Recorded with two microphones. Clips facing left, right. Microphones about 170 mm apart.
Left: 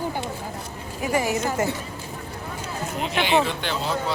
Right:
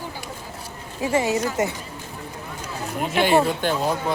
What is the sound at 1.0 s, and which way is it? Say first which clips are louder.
Speech: right 2 dB; 25° right (ahead or behind).